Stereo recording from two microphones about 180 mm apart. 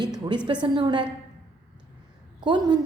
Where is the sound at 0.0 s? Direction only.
25° right (ahead or behind).